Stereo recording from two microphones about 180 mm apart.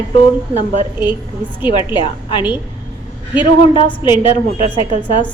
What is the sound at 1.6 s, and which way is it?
A woman's voice, 25° left (ahead or behind).